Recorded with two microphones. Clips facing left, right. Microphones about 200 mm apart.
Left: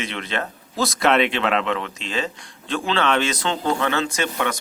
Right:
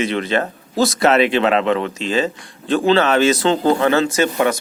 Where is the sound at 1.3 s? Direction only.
35° right (ahead or behind).